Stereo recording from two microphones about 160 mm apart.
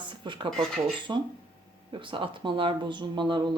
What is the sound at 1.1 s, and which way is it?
Speech, 25° right (ahead or behind).